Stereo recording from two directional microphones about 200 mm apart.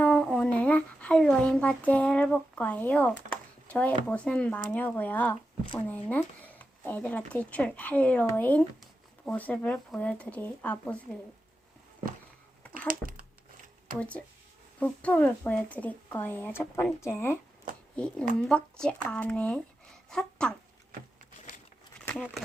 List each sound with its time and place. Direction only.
0.0 s speech: 5° left (ahead or behind)
12.9 s speech: 45° right (ahead or behind)
14.8 s speech: 5° left (ahead or behind)